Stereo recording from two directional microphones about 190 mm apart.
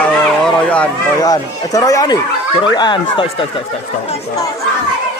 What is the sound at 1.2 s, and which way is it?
Speech, 20° left (ahead or behind).